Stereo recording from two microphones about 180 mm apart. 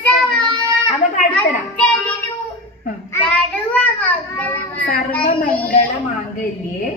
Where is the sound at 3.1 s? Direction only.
10° left (ahead or behind).